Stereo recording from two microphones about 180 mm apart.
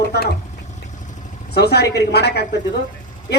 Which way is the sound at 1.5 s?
65° left (ahead or behind).